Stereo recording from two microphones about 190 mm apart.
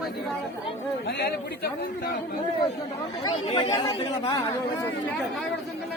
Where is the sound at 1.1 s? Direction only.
55° left (ahead or behind).